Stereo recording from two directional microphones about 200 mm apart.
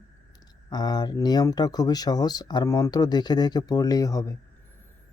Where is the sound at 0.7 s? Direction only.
20° left (ahead or behind).